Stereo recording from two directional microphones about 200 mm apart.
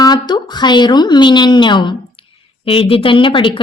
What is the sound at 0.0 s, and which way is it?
A woman's voice, 20° left (ahead or behind).